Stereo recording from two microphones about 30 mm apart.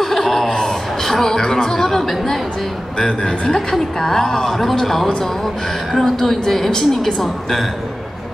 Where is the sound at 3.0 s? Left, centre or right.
Left.